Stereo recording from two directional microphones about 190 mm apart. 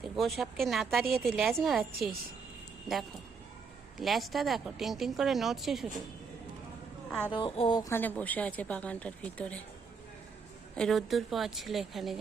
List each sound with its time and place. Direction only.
0.0 s speech: centre (ahead or behind)
3.9 s speech: centre (ahead or behind)
7.3 s a sound: 25° left (ahead or behind)
7.8 s speech: 15° left (ahead or behind)
10.8 s speech: centre (ahead or behind)